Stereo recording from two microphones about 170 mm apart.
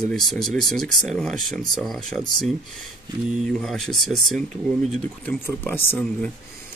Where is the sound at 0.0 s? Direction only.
Centre (ahead or behind).